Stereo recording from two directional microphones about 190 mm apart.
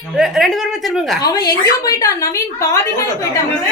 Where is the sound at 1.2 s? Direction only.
20° left (ahead or behind).